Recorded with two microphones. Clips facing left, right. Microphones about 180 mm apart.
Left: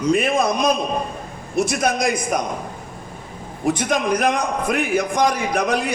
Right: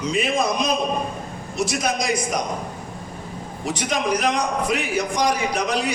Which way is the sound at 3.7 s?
55° left (ahead or behind).